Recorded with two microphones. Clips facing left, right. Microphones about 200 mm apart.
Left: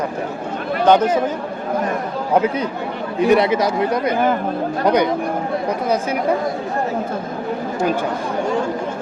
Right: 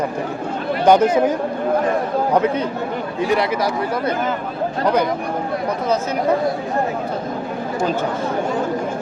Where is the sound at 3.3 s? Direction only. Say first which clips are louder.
Left 4 dB; 20° left (ahead or behind).